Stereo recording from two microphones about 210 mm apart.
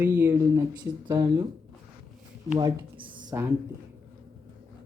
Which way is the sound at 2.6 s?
20° right (ahead or behind).